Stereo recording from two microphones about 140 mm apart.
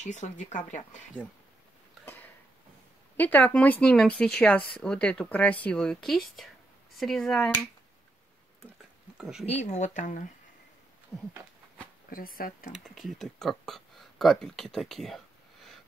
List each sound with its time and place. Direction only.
0.0 s speech: 55° left (ahead or behind)
3.2 s speech: 10° left (ahead or behind)
9.2 s speech: centre (ahead or behind)
9.5 s speech: 55° left (ahead or behind)
11.1 s speech: centre (ahead or behind)
12.1 s speech: 90° left
12.7 s speech: centre (ahead or behind)